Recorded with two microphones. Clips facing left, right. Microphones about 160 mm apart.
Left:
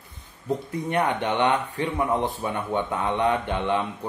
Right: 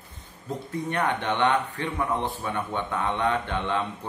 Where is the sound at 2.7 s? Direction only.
15° left (ahead or behind).